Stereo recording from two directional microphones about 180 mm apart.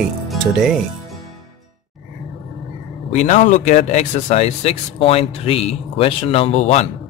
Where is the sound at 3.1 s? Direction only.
40° left (ahead or behind).